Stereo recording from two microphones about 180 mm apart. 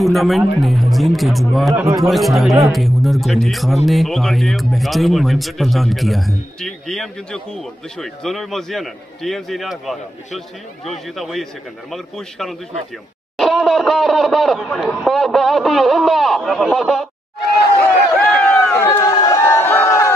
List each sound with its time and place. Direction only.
0.0 s speech: centre (ahead or behind)
1.7 s speech: 15° right (ahead or behind)
2.0 s speech: centre (ahead or behind)
18.1 s run: 10° left (ahead or behind)
19.6 s a sound: 10° left (ahead or behind)